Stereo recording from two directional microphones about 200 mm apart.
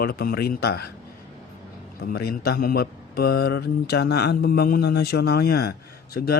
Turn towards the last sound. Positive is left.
turn(degrees=50)  # may be behind; listen again after turning